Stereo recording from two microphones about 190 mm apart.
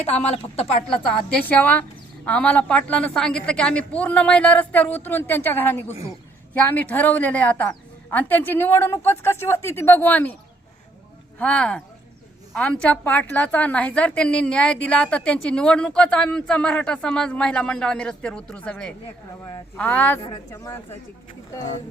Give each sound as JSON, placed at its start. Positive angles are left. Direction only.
{"t": 0.1, "sound": "a woman's voice", "side_deg": 35}
{"t": 1.5, "sound": "a woman's voice", "side_deg": 10}
{"t": 11.3, "sound": "a woman's voice", "side_deg": 5}
{"t": 20.2, "sound": "speech", "side_deg": 20}